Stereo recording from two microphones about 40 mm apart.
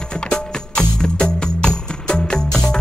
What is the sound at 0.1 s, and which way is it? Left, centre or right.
Music, centre.